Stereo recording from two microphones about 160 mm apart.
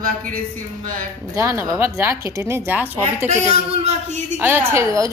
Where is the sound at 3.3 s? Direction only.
40° right (ahead or behind).